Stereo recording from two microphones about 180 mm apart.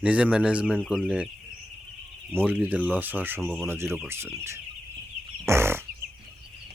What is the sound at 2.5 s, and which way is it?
Speech, 10° right (ahead or behind).